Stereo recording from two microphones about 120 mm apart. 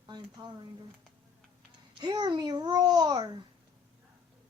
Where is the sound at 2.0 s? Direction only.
35° right (ahead or behind).